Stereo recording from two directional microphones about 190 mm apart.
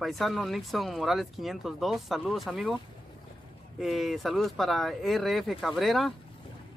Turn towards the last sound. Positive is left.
turn(degrees=0)  # may be behind; listen again after turning